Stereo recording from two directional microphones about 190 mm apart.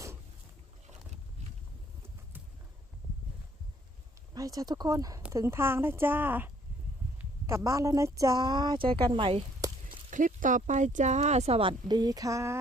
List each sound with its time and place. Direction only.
4.4 s speech: 20° right (ahead or behind)
10.1 s speech: 45° right (ahead or behind); by 12.5 s 15° right (ahead or behind)